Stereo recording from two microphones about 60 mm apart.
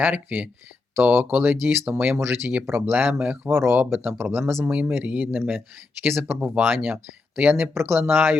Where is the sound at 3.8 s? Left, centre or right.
Right.